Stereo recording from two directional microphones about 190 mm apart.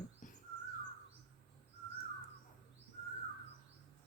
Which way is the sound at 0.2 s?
40° left (ahead or behind).